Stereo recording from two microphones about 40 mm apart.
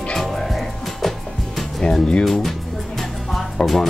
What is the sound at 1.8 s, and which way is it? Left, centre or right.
Speech, left.